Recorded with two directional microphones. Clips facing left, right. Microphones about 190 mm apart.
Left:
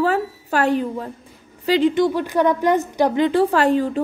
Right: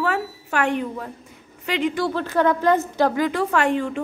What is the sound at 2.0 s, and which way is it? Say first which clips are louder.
A woman's voice: left 4 dB; 15° left (ahead or behind).